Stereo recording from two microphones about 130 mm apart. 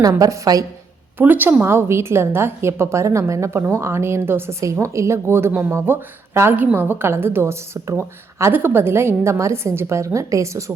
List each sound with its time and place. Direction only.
0.2 s a woman's voice: 30° right (ahead or behind)
1.2 s a woman's voice: 15° right (ahead or behind)